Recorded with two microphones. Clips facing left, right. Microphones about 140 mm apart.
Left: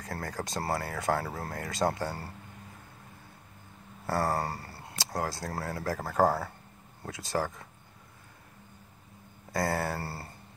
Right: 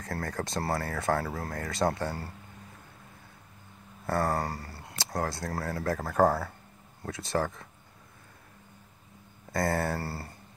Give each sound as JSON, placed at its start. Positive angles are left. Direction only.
{"t": 0.0, "sound": "speech", "side_deg": 25}
{"t": 1.7, "sound": "speech", "side_deg": 15}
{"t": 4.1, "sound": "speech", "side_deg": 35}
{"t": 4.9, "sound": "a sound", "side_deg": 15}
{"t": 5.4, "sound": "speech", "side_deg": 30}
{"t": 6.0, "sound": "speech", "side_deg": 10}
{"t": 9.9, "sound": "speech", "side_deg": 25}